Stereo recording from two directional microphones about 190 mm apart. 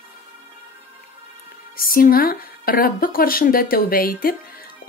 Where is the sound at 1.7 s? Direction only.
50° left (ahead or behind).